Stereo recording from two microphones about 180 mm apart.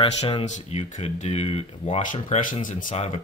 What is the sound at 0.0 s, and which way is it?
Speech, 30° left (ahead or behind).